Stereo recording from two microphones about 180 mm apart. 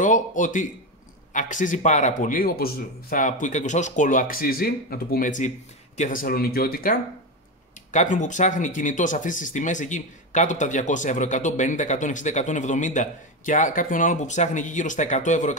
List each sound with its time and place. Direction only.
0.0 s speech: 45° left (ahead or behind)
7.9 s speech: 45° left (ahead or behind)